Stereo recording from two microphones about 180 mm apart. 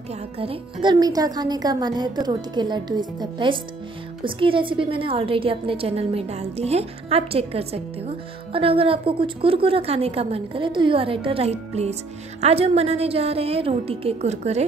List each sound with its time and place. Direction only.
0.4 s a woman's voice: 30° right (ahead or behind)